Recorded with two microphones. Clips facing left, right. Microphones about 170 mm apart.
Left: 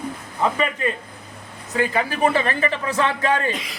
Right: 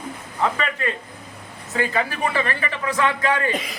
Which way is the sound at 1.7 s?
20° left (ahead or behind).